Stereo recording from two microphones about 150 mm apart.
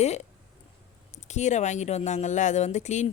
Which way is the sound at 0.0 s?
50° left (ahead or behind).